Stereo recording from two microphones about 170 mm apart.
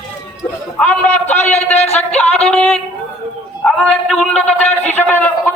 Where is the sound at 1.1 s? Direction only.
40° left (ahead or behind).